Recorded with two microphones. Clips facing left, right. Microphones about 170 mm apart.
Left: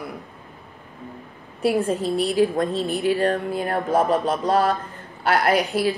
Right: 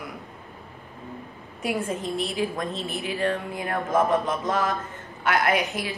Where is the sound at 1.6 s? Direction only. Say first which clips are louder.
Left 7 dB; 35° left (ahead or behind).